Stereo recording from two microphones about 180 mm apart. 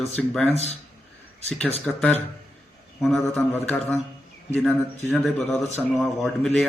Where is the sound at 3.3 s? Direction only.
10° left (ahead or behind).